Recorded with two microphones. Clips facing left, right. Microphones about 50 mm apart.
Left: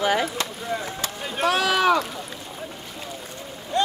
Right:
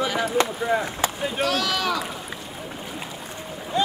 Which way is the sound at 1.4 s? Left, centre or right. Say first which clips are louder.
Left 5 dB; left.